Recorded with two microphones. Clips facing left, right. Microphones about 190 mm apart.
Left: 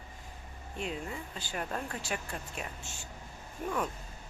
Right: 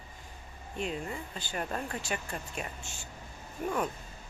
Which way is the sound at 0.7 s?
Centre (ahead or behind).